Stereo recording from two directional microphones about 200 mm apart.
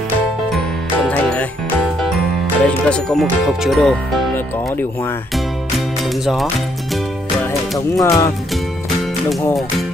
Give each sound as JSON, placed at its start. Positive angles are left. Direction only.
{"t": 2.0, "sound": "speech", "side_deg": 0}
{"t": 8.0, "sound": "speech", "side_deg": 15}